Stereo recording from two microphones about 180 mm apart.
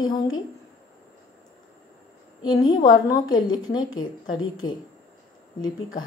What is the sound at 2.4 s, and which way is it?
A woman's voice, 25° left (ahead or behind).